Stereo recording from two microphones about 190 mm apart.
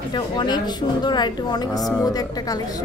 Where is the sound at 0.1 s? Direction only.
25° left (ahead or behind).